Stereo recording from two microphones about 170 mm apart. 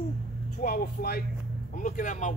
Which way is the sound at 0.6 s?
60° left (ahead or behind).